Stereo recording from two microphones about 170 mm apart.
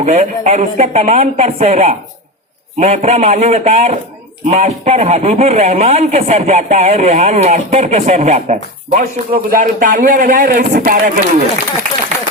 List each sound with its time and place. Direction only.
0.0 s a man's voice: 45° right (ahead or behind)